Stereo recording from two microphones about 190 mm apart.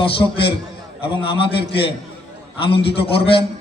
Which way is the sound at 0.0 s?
25° left (ahead or behind).